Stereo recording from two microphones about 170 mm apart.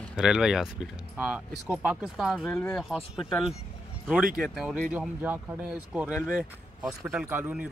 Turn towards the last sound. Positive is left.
turn(degrees=-10)  # may be behind; listen again after turning